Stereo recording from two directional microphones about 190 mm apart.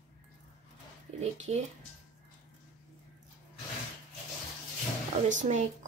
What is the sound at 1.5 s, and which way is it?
Speech, 35° right (ahead or behind).